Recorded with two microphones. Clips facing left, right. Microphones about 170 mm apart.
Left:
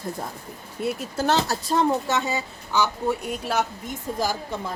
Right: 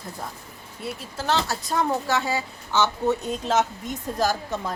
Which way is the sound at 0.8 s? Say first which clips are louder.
Left 7 dB; 45° left (ahead or behind).